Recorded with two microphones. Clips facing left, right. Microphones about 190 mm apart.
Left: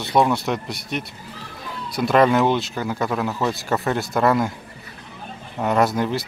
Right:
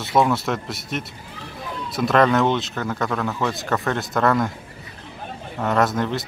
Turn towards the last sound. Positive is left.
turn(degrees=0)  # may be behind; listen again after turning